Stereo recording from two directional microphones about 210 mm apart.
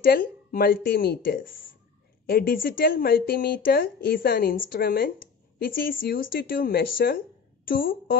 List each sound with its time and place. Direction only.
0.0 s speech: 45° left (ahead or behind)